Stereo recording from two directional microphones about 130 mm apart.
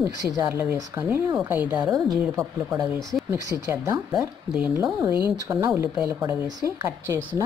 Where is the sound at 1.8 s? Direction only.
30° right (ahead or behind).